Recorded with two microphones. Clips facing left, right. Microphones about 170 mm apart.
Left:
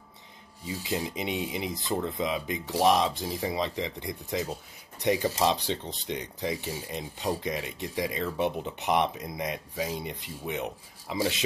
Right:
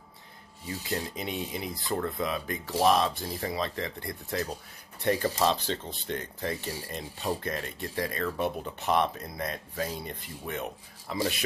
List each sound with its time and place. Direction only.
0.7 s speech: 15° left (ahead or behind)